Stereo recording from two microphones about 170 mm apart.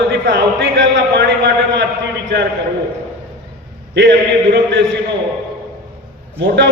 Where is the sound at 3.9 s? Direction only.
90° right.